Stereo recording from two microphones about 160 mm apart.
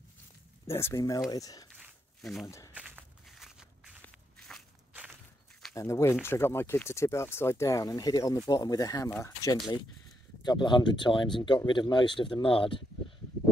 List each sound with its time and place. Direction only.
0.7 s speech: 15° left (ahead or behind)
1.8 s a sound: centre (ahead or behind)
2.4 s speech: 20° left (ahead or behind)
2.7 s walk: 10° right (ahead or behind)
5.8 s speech: 20° left (ahead or behind)